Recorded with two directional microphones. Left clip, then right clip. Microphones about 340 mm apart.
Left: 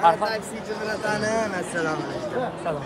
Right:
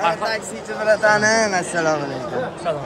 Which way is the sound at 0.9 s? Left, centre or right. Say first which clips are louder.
Right 11 dB; centre.